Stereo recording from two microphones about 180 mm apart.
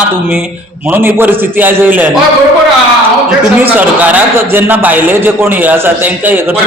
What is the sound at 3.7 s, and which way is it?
A man's voice, 10° right (ahead or behind).